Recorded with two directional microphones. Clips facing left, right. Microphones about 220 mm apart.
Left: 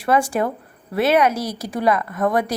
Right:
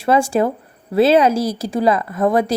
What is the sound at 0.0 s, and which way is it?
A woman's voice, 25° right (ahead or behind).